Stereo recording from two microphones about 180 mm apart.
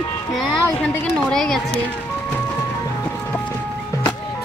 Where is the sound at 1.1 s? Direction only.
5° left (ahead or behind).